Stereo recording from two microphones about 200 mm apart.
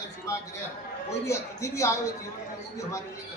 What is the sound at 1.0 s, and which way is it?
Speech, 15° left (ahead or behind).